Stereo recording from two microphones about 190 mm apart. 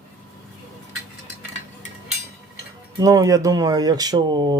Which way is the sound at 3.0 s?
20° right (ahead or behind).